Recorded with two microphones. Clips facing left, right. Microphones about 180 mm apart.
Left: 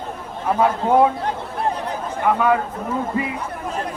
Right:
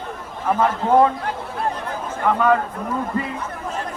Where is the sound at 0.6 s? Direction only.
10° left (ahead or behind).